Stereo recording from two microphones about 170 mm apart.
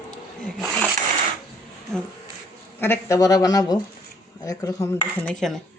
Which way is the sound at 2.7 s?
15° left (ahead or behind).